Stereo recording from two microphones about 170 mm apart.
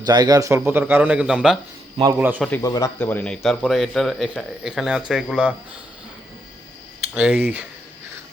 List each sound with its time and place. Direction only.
0.0 s a man's voice: 25° right (ahead or behind)
2.6 s speech: 20° left (ahead or behind); by 5.5 s 5° right (ahead or behind)
7.1 s a man's voice: 10° right (ahead or behind)